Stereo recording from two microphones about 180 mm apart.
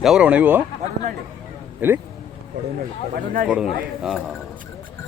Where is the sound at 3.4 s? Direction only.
5° right (ahead or behind).